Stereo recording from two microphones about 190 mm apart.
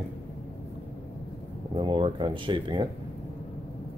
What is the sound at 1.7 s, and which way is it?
Speech, 25° right (ahead or behind).